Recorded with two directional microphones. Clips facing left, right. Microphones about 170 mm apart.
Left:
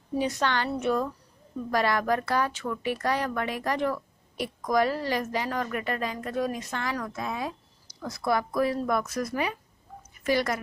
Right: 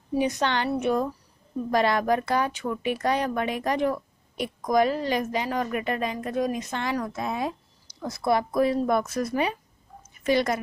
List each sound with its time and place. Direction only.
0.1 s a woman's voice: 15° right (ahead or behind)